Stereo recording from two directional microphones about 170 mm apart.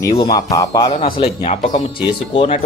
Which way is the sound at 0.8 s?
35° left (ahead or behind).